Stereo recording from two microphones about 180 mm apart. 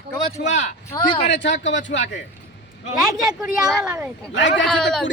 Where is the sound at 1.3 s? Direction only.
80° left.